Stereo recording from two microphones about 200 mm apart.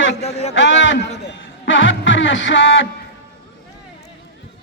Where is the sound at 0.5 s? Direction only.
70° left (ahead or behind).